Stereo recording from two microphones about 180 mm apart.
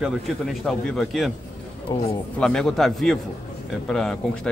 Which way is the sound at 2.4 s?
5° left (ahead or behind).